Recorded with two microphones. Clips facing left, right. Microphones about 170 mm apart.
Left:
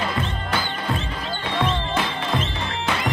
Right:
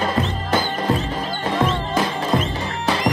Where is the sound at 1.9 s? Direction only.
40° right (ahead or behind).